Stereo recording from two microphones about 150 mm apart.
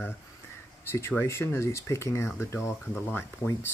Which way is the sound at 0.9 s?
15° left (ahead or behind).